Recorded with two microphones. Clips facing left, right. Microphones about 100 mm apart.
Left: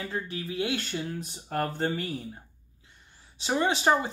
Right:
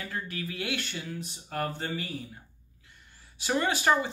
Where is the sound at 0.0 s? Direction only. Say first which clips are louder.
Left 2 dB; 25° left (ahead or behind).